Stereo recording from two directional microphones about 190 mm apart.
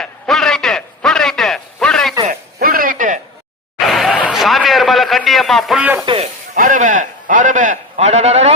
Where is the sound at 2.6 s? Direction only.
50° right (ahead or behind).